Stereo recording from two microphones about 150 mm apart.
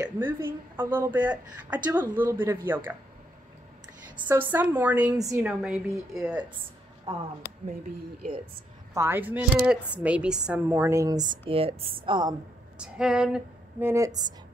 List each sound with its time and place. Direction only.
0.0 s a woman's voice: 15° right (ahead or behind)
4.3 s a woman's voice: 15° right (ahead or behind)
5.1 s a woman's voice: 20° right (ahead or behind)
5.4 s a woman's voice: 5° right (ahead or behind)
7.1 s speech: 40° right (ahead or behind)
8.9 s a woman's voice: 15° right (ahead or behind)
12.7 s a sound: 5° right (ahead or behind)
13.8 s a woman's voice: 20° right (ahead or behind)